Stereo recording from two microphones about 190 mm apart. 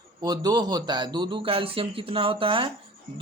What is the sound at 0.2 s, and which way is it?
A man's voice, 20° right (ahead or behind).